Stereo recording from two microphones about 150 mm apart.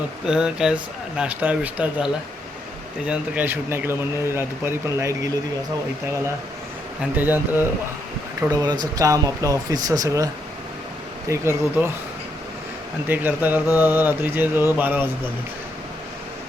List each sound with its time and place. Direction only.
0.3 s speech: 5° right (ahead or behind)
3.1 s speech: 10° right (ahead or behind)
7.0 s speech: 10° right (ahead or behind)
8.4 s speech: 25° right (ahead or behind)
11.3 s speech: 15° right (ahead or behind)
13.1 s speech: 10° right (ahead or behind)